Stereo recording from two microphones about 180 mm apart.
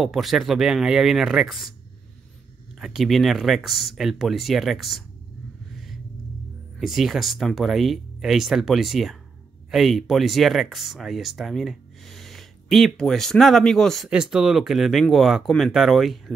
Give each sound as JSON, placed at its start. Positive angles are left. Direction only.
{"t": 0.0, "sound": "speech", "side_deg": 0}
{"t": 2.8, "sound": "speech", "side_deg": 0}
{"t": 6.8, "sound": "speech", "side_deg": 0}